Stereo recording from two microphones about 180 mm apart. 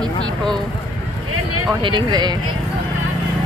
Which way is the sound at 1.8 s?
25° right (ahead or behind).